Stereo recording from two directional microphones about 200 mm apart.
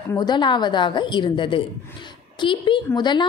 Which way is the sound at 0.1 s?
20° left (ahead or behind).